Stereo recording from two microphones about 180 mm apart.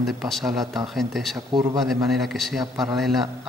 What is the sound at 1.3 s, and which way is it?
Speech, 20° right (ahead or behind).